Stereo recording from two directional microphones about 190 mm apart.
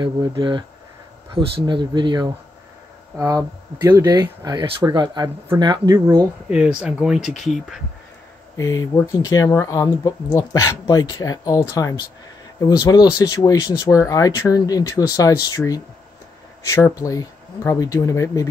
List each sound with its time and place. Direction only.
0.0 s speech: 25° right (ahead or behind)
6.5 s speech: 5° right (ahead or behind)
8.5 s speech: 15° left (ahead or behind)